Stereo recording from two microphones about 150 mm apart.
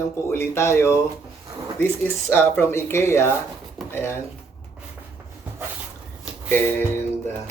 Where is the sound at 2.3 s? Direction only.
15° left (ahead or behind).